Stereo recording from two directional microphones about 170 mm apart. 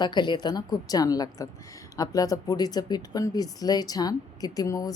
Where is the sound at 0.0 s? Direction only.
25° left (ahead or behind).